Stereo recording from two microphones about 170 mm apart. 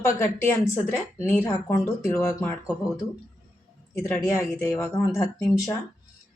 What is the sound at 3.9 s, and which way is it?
Speech, 15° left (ahead or behind).